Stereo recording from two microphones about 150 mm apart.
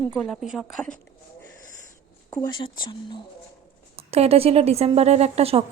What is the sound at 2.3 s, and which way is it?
Speech, 30° left (ahead or behind).